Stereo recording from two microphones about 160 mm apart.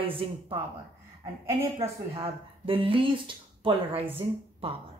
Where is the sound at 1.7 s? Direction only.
35° right (ahead or behind).